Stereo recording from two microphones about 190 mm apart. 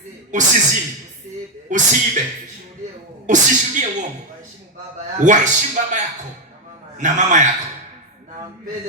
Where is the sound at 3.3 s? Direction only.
40° right (ahead or behind).